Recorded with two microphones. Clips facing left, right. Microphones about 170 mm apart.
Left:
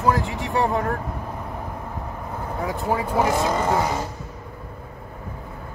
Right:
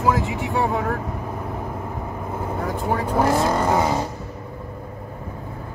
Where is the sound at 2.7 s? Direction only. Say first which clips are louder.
Even; 5° left (ahead or behind).